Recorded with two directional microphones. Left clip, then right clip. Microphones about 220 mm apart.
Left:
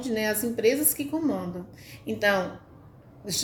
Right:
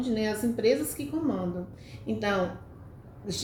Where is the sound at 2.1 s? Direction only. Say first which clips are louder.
Left 6 dB; 50° left (ahead or behind).